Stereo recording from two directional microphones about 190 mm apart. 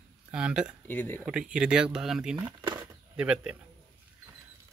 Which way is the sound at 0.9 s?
10° left (ahead or behind).